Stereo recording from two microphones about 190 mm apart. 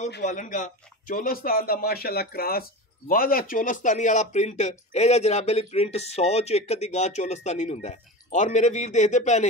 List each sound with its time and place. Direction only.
0.2 s speech: 40° left (ahead or behind)